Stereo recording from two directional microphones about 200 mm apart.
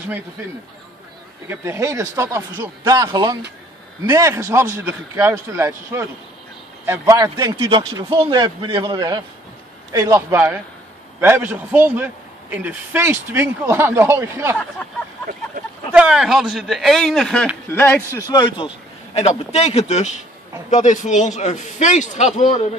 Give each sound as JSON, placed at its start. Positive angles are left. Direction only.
{"t": 1.5, "sound": "a man's voice", "side_deg": -15}
{"t": 15.9, "sound": "a man's voice", "side_deg": -5}
{"t": 19.1, "sound": "a man's voice", "side_deg": 30}